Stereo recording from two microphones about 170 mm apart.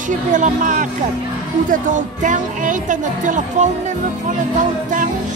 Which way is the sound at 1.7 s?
50° right (ahead or behind).